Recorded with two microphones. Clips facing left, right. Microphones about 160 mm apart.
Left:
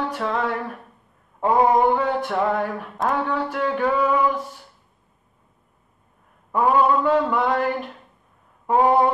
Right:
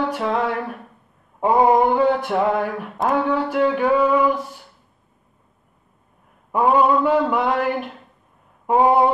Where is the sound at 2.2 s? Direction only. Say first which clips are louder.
Right 2 dB; 5° right (ahead or behind).